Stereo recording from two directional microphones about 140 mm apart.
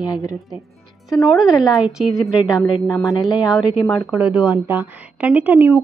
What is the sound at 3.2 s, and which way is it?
A woman's voice, centre (ahead or behind).